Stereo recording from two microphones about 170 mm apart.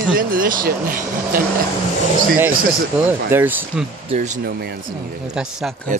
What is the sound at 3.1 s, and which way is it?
Speech, 10° right (ahead or behind).